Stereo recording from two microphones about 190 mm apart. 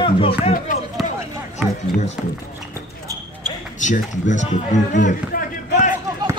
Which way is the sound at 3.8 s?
40° left (ahead or behind).